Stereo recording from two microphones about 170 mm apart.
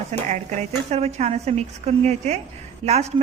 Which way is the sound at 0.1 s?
45° right (ahead or behind).